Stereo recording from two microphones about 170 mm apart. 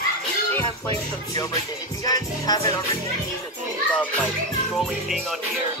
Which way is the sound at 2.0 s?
20° left (ahead or behind).